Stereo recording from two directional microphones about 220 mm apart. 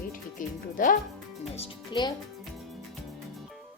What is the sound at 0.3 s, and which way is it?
Music, 35° left (ahead or behind).